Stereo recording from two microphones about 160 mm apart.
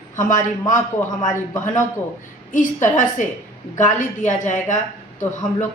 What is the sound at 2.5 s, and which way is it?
Speech, 55° left (ahead or behind).